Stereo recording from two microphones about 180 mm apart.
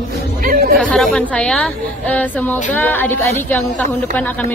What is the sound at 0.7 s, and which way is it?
A woman's voice, centre (ahead or behind).